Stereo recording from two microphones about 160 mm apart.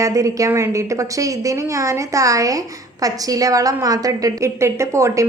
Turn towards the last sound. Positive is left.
turn(degrees=-20)  # may be behind; listen again after turning